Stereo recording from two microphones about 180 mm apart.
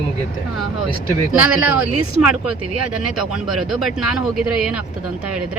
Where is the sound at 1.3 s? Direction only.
10° right (ahead or behind).